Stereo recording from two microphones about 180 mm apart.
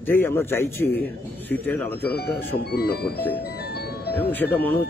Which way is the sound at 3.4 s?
60° left (ahead or behind).